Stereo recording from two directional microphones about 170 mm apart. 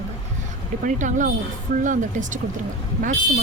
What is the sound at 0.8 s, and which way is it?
Speech, 50° right (ahead or behind).